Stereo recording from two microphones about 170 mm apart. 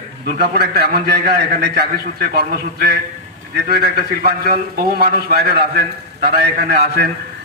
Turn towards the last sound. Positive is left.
turn(degrees=-70)  # may be behind; listen again after turning